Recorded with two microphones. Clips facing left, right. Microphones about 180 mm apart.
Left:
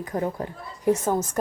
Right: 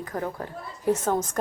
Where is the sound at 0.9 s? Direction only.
10° left (ahead or behind).